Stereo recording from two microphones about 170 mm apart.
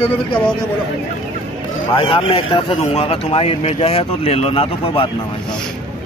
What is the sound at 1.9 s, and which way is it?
Speech, 30° left (ahead or behind).